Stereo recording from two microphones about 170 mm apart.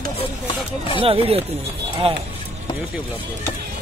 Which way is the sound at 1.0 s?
35° right (ahead or behind).